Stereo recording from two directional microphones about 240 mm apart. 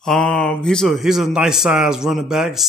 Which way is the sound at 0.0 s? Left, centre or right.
Centre.